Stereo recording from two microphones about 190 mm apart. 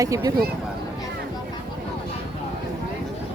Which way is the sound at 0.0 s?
15° right (ahead or behind).